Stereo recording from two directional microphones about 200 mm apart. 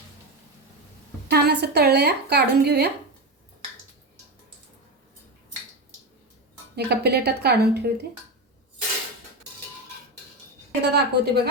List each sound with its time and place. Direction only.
1.3 s a woman's voice: 55° right (ahead or behind)
6.7 s a woman's voice: 55° right (ahead or behind)
10.8 s a woman's voice: 55° right (ahead or behind)